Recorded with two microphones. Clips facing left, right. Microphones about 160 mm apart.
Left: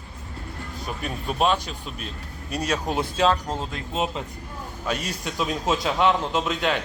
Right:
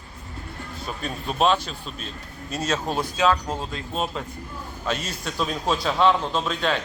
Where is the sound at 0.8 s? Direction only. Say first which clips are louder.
Even; 10° left (ahead or behind).